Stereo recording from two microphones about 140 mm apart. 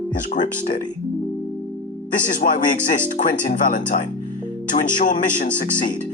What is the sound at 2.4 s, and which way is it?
Speech, 80° left.